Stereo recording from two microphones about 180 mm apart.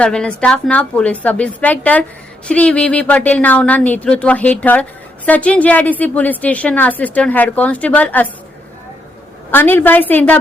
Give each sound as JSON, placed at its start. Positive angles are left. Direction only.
{"t": 0.0, "sound": "speech", "side_deg": 5}
{"t": 9.5, "sound": "speech", "side_deg": 10}